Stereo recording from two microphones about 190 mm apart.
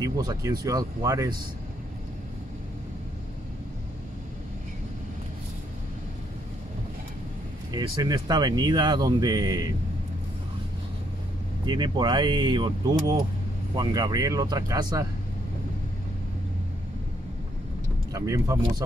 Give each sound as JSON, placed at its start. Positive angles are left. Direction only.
{"t": 0.0, "sound": "speech", "side_deg": -20}
{"t": 7.7, "sound": "speech", "side_deg": -20}
{"t": 11.6, "sound": "speech", "side_deg": -25}
{"t": 18.1, "sound": "speech", "side_deg": -15}